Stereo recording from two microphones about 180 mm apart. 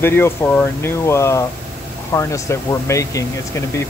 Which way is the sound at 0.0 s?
15° left (ahead or behind).